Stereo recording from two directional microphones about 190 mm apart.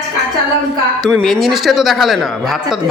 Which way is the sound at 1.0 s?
Centre (ahead or behind).